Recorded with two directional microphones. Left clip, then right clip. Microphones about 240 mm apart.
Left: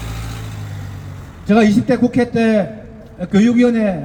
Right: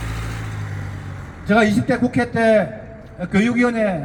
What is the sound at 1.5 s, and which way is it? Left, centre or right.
A man's voice, centre.